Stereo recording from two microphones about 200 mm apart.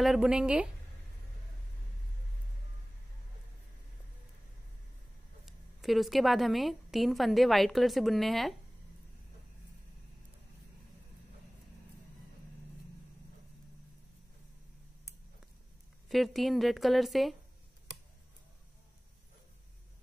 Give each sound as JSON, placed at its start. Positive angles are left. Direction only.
{"t": 0.0, "sound": "a woman's voice", "side_deg": -5}
{"t": 5.4, "sound": "a woman's voice", "side_deg": 0}
{"t": 16.1, "sound": "a woman's voice", "side_deg": 0}